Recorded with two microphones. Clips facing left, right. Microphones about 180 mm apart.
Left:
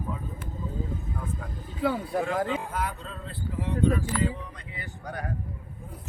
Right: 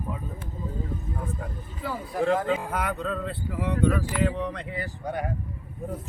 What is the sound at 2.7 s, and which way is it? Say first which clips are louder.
Speech: right 4 dB; 60° right (ahead or behind).